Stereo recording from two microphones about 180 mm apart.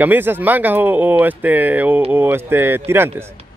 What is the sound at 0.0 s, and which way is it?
Speech, 10° right (ahead or behind).